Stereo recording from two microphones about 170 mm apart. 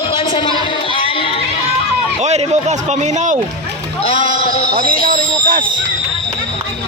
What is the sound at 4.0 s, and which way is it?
Music, 35° left (ahead or behind).